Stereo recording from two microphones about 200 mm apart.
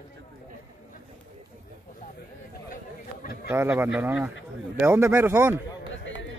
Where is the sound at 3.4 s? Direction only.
10° right (ahead or behind).